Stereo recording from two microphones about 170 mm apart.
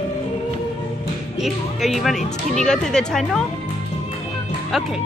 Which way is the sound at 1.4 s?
Centre (ahead or behind).